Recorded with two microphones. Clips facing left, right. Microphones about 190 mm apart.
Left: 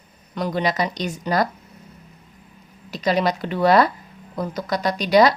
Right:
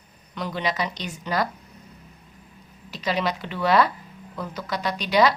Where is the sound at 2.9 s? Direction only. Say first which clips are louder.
Left 5 dB; 40° left (ahead or behind).